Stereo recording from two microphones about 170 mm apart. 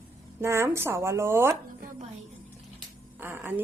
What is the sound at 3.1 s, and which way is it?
Music, 10° right (ahead or behind).